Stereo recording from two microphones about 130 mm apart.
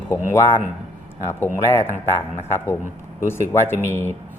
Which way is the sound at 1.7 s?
20° left (ahead or behind).